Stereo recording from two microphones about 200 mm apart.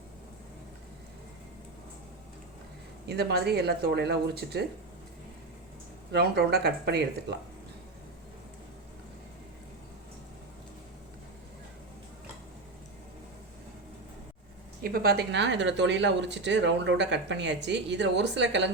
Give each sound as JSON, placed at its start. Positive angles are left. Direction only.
{"t": 3.1, "sound": "speech", "side_deg": -55}
{"t": 6.1, "sound": "speech", "side_deg": -55}
{"t": 14.8, "sound": "speech", "side_deg": -50}